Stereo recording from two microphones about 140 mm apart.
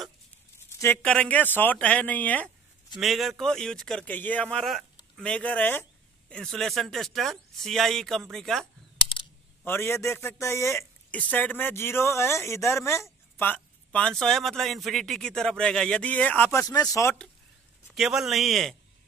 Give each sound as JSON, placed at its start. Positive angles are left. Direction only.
{"t": 1.0, "sound": "a man's voice", "side_deg": 10}
{"t": 3.0, "sound": "speech", "side_deg": 0}
{"t": 9.7, "sound": "a man's voice", "side_deg": 15}
{"t": 16.6, "sound": "speech", "side_deg": 25}
{"t": 17.8, "sound": "speech", "side_deg": 0}